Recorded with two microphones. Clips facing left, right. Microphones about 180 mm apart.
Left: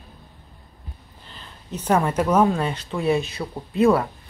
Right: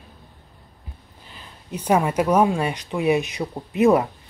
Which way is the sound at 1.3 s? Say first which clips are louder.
Right 1 dB; 10° right (ahead or behind).